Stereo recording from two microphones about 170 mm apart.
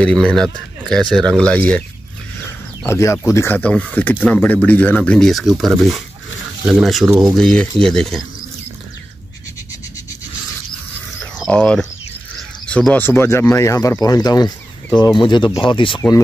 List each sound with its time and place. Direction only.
0.0 s speech: 5° left (ahead or behind)
2.8 s speech: 15° left (ahead or behind)
11.3 s speech: 5° left (ahead or behind); by 16.0 s 30° left (ahead or behind)